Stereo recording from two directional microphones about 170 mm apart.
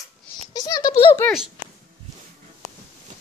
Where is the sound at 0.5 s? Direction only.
25° left (ahead or behind).